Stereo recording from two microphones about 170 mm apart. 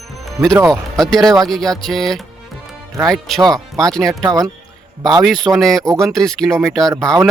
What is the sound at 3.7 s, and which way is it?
Speech, centre (ahead or behind).